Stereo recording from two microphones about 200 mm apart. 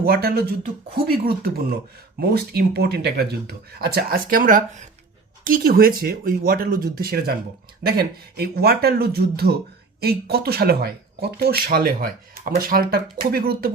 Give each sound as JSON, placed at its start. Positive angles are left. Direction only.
{"t": 0.0, "sound": "speech", "side_deg": -50}